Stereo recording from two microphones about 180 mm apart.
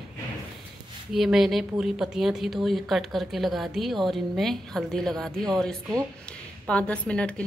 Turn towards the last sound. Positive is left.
turn(degrees=5)  # may be behind; listen again after turning